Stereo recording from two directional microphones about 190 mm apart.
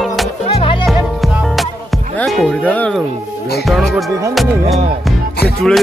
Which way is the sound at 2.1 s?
Centre (ahead or behind).